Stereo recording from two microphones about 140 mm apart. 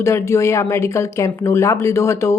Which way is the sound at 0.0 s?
20° left (ahead or behind).